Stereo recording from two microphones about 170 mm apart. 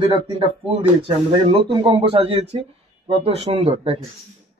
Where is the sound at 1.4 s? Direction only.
30° right (ahead or behind).